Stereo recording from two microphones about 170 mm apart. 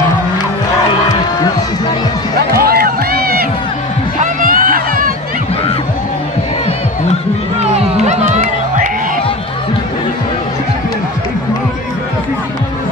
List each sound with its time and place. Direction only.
2.5 s run: 65° right (ahead or behind)
4.2 s a sound: 55° right (ahead or behind)
8.0 s music: 40° right (ahead or behind)